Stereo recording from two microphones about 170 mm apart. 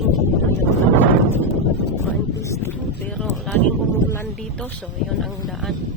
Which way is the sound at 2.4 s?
20° left (ahead or behind).